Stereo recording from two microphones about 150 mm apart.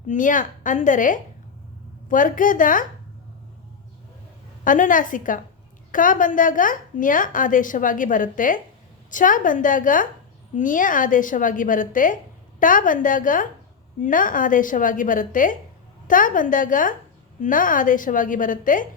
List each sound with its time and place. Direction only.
0.1 s a woman's voice: 60° left (ahead or behind)
4.6 s a woman's voice: 60° left (ahead or behind)